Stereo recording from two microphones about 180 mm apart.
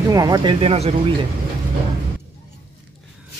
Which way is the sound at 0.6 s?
35° right (ahead or behind).